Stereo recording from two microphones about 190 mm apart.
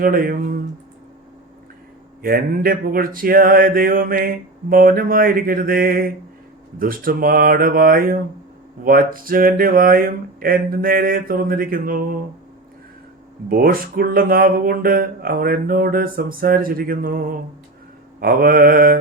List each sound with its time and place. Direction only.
0.0 s speech: 50° right (ahead or behind)
2.2 s speech: 50° right (ahead or behind)
13.5 s speech: 50° right (ahead or behind)